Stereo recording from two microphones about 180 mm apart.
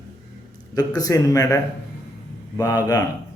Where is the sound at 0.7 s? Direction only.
20° left (ahead or behind).